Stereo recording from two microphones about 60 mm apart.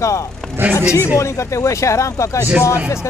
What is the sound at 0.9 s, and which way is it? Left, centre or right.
Speech, left.